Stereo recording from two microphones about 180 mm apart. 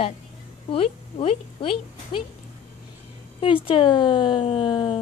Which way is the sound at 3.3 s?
30° left (ahead or behind).